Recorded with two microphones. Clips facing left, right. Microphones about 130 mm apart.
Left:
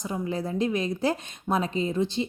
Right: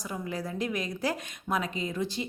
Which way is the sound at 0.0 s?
25° left (ahead or behind).